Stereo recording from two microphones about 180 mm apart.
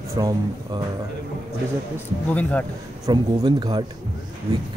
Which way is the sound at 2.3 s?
10° left (ahead or behind).